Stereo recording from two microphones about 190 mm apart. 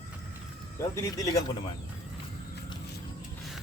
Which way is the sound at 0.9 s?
15° left (ahead or behind).